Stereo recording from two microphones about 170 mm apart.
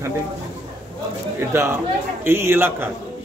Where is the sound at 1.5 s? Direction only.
15° right (ahead or behind).